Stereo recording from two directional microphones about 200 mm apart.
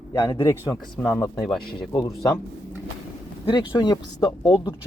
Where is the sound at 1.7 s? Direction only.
25° left (ahead or behind).